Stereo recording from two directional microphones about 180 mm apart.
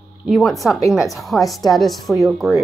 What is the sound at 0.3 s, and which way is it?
A woman's voice, centre (ahead or behind).